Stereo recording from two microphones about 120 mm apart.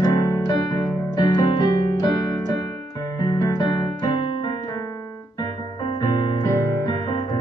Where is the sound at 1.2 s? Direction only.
35° left (ahead or behind).